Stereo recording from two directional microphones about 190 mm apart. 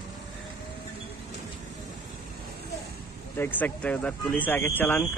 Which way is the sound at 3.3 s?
10° left (ahead or behind).